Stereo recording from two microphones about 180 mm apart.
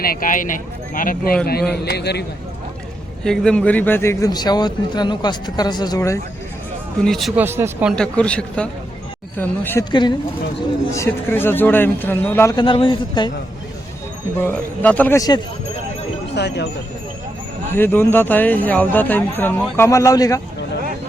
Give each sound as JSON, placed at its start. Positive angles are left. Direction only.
{"t": 0.0, "sound": "speech", "side_deg": 55}
{"t": 1.8, "sound": "a man's voice", "side_deg": 65}
{"t": 3.2, "sound": "speech", "side_deg": 5}
{"t": 7.0, "sound": "a man's voice", "side_deg": 0}
{"t": 7.4, "sound": "speech", "side_deg": -10}
{"t": 7.9, "sound": "a man's voice", "side_deg": 5}
{"t": 9.9, "sound": "speech", "side_deg": 25}
{"t": 10.9, "sound": "speech", "side_deg": 15}
{"t": 12.5, "sound": "speech", "side_deg": 25}
{"t": 14.3, "sound": "speech", "side_deg": 10}
{"t": 16.3, "sound": "speech", "side_deg": 70}
{"t": 17.7, "sound": "speech", "side_deg": 10}